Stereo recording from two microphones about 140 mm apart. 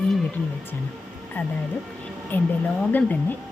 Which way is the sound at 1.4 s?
15° left (ahead or behind).